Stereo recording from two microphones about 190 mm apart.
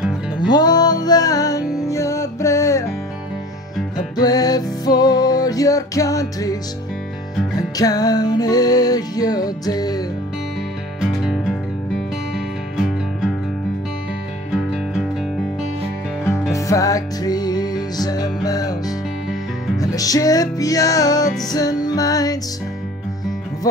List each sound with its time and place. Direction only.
0.4 s music: 20° left (ahead or behind)
4.2 s music: 20° left (ahead or behind)
7.5 s music: 20° left (ahead or behind)
11.0 s music: centre (ahead or behind)
12.7 s music: centre (ahead or behind)
16.5 s music: 15° left (ahead or behind)
19.8 s music: 20° left (ahead or behind)